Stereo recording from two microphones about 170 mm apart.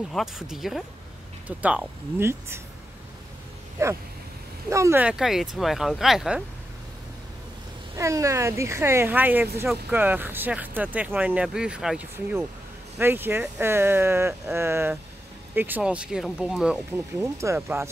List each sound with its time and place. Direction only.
0.1 s speech: 5° right (ahead or behind)
3.8 s speech: 15° right (ahead or behind)
7.9 s speech: 20° right (ahead or behind)
17.2 s speech: 15° right (ahead or behind)